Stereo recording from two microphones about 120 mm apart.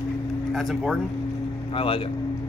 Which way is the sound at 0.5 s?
Centre (ahead or behind).